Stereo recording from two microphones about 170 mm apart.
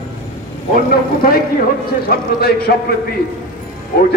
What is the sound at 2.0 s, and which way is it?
Speech, 65° left (ahead or behind).